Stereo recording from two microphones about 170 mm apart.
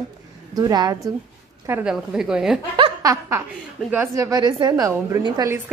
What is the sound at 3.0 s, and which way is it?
A woman's voice, 20° right (ahead or behind).